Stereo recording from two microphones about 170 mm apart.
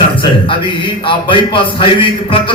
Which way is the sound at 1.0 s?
30° left (ahead or behind).